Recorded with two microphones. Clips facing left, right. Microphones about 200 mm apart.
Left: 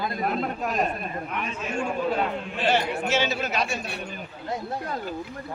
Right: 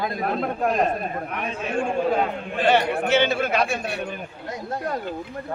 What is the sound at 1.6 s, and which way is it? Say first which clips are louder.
A man's voice: right 4 dB; 55° right (ahead or behind).